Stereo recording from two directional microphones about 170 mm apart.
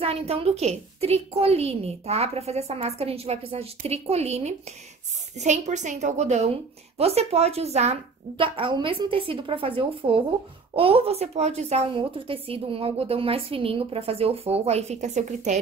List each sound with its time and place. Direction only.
0.0 s a woman's voice: 35° right (ahead or behind)